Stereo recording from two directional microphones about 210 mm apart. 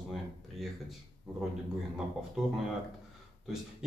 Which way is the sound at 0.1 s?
Centre (ahead or behind).